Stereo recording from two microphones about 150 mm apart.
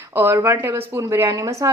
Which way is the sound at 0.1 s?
15° right (ahead or behind).